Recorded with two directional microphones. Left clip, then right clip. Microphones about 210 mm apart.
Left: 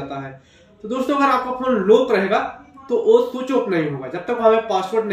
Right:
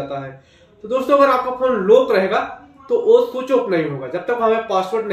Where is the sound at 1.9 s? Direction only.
5° left (ahead or behind).